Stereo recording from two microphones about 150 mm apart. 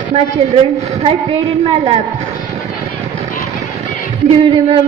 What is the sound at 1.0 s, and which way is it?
Speech, 40° right (ahead or behind).